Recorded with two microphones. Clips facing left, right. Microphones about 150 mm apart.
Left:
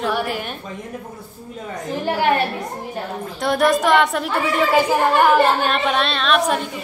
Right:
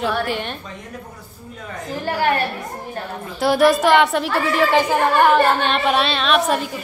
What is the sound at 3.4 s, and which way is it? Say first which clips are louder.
A woman's voice: right 3 dB; centre (ahead or behind).